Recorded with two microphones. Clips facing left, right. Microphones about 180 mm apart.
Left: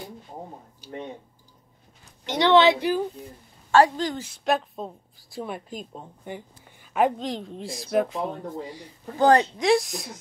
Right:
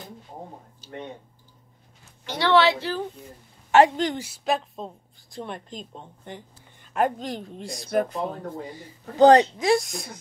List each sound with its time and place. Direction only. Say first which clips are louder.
0.7 s speech: left 2 dB; 15° left (ahead or behind)
2.2 s a woman's voice: left 2 dB; 20° left (ahead or behind)
3.7 s a woman's voice: right 1 dB; 25° right (ahead or behind)
4.2 s speech: left 1 dB; 5° right (ahead or behind)
9.2 s a woman's voice: right 4 dB; 20° right (ahead or behind)
9.6 s speech: left 1 dB; centre (ahead or behind)